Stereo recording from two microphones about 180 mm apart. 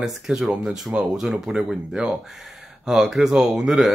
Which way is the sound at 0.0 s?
5° right (ahead or behind).